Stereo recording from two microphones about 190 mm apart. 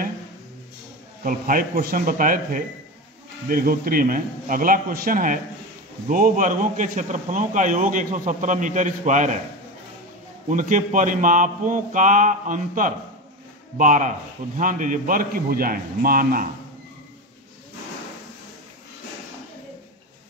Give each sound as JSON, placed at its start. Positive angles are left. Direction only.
{"t": 1.2, "sound": "a man's voice", "side_deg": -50}
{"t": 10.5, "sound": "a man's voice", "side_deg": -45}